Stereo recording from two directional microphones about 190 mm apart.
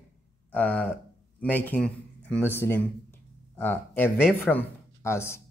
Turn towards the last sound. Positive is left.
turn(degrees=15)  # may be behind; listen again after turning